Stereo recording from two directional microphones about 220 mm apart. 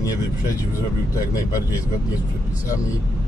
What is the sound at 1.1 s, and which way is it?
Speech, 15° left (ahead or behind).